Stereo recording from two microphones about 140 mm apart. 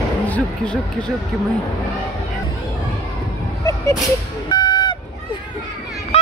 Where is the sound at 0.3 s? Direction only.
5° left (ahead or behind).